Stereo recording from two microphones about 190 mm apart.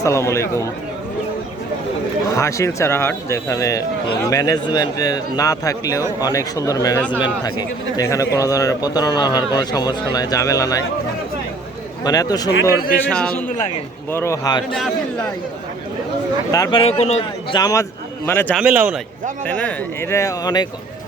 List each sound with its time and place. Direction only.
0.0 s a man's voice: 15° left (ahead or behind)
2.3 s a man's voice: 15° left (ahead or behind)
12.0 s a man's voice: 20° left (ahead or behind)
13.1 s a man's voice: 5° left (ahead or behind)
14.7 s a man's voice: centre (ahead or behind)
16.5 s a man's voice: 20° left (ahead or behind)
16.8 s a man's voice: 35° left (ahead or behind)
17.6 s a man's voice: 20° left (ahead or behind)
18.5 s a man's voice: 5° right (ahead or behind)
19.5 s a man's voice: 10° left (ahead or behind)